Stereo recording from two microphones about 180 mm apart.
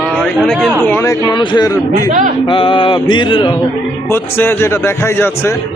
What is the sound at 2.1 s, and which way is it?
Speech, 45° right (ahead or behind).